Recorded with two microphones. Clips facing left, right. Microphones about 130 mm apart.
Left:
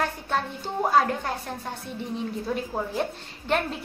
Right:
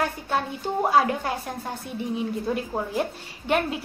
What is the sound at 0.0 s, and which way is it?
A woman's voice, 5° right (ahead or behind).